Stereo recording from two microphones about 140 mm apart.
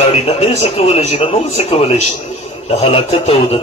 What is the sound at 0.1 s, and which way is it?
Speech, 45° left (ahead or behind).